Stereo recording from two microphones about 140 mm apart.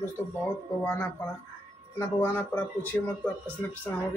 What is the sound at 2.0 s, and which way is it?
A man's voice, 15° left (ahead or behind).